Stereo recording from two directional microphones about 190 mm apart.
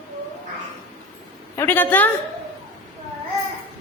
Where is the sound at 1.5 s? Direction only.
15° left (ahead or behind).